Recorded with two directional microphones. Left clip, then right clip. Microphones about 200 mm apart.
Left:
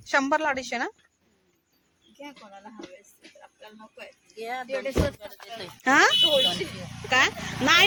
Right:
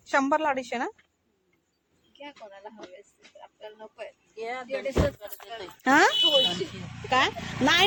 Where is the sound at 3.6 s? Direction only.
40° left (ahead or behind).